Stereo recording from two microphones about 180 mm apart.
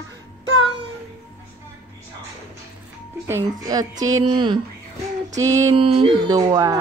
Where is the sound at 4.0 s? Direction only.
20° right (ahead or behind).